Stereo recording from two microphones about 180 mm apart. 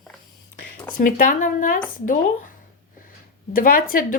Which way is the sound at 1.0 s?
50° left (ahead or behind).